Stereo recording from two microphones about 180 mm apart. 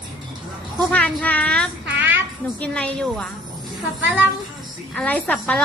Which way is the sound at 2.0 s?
10° right (ahead or behind).